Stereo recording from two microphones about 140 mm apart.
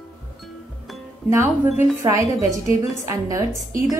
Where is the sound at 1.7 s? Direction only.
20° right (ahead or behind).